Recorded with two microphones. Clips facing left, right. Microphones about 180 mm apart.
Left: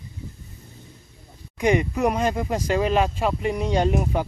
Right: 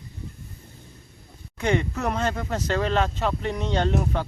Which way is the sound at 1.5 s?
15° left (ahead or behind).